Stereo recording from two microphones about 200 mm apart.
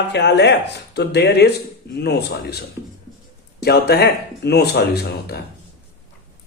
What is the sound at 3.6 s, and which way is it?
Speech, 55° left (ahead or behind).